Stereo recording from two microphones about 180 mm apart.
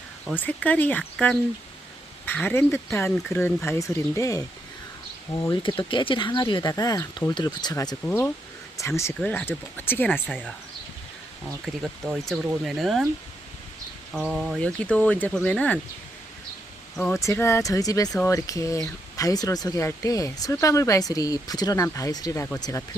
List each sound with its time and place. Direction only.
0.3 s speech: 10° left (ahead or behind)
8.0 s speech: 10° left (ahead or behind)
11.6 s speech: centre (ahead or behind)
14.1 s speech: centre (ahead or behind)
17.0 s speech: 5° left (ahead or behind)